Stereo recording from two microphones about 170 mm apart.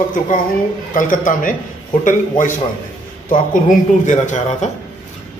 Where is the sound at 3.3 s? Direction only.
50° left (ahead or behind).